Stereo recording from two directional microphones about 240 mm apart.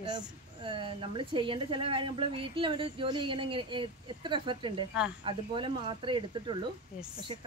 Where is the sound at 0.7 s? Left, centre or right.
Right.